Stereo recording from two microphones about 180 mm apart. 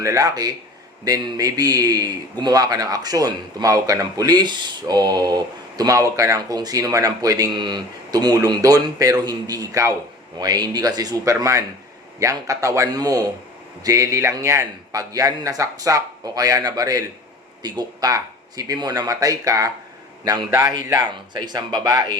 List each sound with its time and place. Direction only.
0.0 s speech: 20° right (ahead or behind)